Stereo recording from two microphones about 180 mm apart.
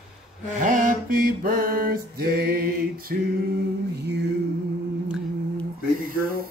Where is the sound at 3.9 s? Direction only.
70° right (ahead or behind).